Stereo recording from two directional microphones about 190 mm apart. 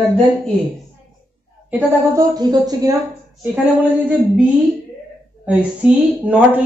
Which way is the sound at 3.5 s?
5° right (ahead or behind).